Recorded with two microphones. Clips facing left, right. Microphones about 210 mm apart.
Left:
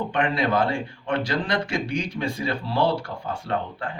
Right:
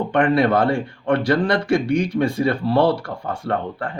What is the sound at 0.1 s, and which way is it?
Speech, 55° right (ahead or behind).